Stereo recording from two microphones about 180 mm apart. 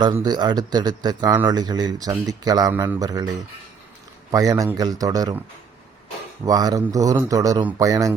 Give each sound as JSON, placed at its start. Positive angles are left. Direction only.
{"t": 0.0, "sound": "a man's voice", "side_deg": -25}
{"t": 4.3, "sound": "a man's voice", "side_deg": -20}
{"t": 6.4, "sound": "a man's voice", "side_deg": -20}